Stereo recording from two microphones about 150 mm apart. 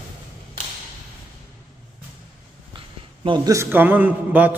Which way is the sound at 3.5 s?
15° right (ahead or behind).